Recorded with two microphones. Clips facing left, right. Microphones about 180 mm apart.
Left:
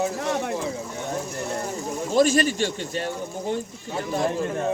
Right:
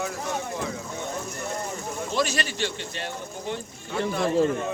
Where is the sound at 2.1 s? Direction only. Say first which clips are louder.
Left 9 dB; 45° left (ahead or behind).